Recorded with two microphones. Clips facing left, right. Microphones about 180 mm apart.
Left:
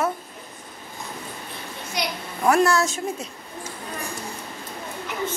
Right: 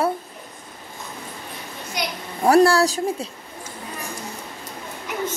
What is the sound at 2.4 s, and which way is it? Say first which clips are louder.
Speech: right 4 dB; 35° right (ahead or behind).